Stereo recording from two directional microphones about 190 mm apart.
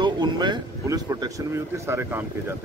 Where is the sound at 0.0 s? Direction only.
25° right (ahead or behind).